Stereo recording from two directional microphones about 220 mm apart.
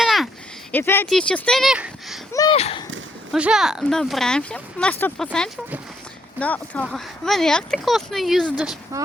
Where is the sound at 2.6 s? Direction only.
25° left (ahead or behind).